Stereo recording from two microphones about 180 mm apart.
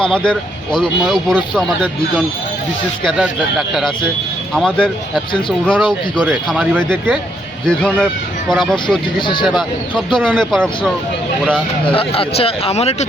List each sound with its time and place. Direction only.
0.1 s speech: 5° left (ahead or behind)
9.1 s speech: 25° left (ahead or behind)
10.2 s speech: 5° left (ahead or behind)
11.9 s speech: 30° left (ahead or behind)